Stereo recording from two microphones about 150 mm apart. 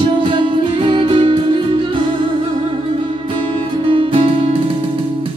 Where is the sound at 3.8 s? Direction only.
35° right (ahead or behind).